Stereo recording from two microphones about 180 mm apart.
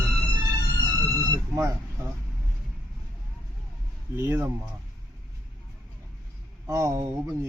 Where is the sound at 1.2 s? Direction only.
15° right (ahead or behind).